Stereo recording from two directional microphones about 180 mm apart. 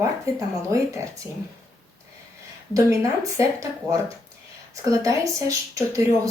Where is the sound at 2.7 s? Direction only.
15° right (ahead or behind).